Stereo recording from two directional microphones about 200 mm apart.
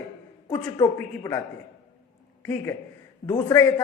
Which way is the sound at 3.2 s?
15° left (ahead or behind).